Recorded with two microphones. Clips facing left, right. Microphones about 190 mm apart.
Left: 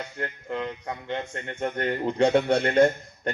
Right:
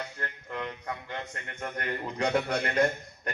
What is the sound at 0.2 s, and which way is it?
Speech, 25° left (ahead or behind).